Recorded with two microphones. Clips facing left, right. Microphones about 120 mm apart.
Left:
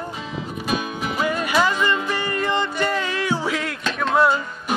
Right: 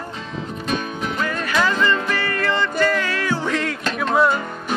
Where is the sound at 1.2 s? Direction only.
15° left (ahead or behind).